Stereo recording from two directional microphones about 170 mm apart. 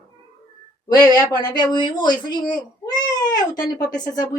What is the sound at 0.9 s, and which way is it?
Speech, 25° left (ahead or behind).